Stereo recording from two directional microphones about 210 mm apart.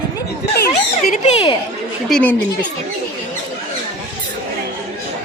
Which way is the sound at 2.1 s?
10° left (ahead or behind).